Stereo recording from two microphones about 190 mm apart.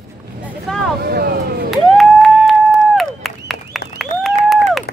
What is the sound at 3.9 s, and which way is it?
Applause, centre (ahead or behind).